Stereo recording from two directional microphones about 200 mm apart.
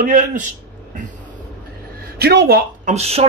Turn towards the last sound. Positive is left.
turn(degrees=-30)  # may be behind; listen again after turning